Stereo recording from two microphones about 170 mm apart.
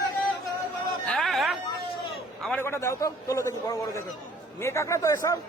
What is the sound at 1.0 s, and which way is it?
Chatter, centre (ahead or behind).